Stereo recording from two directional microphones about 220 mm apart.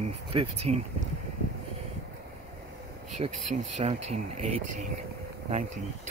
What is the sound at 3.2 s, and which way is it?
Speech, 25° right (ahead or behind).